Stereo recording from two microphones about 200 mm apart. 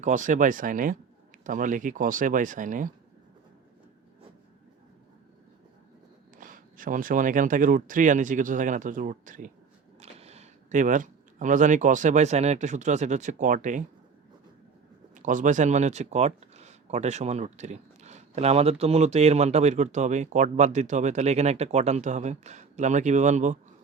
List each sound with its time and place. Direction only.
0.0 s speech: 40° right (ahead or behind)
6.3 s speech: 45° right (ahead or behind)
15.1 s speech: 40° right (ahead or behind)